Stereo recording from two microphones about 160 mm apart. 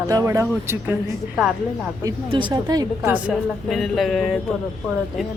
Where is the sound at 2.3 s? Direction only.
30° right (ahead or behind).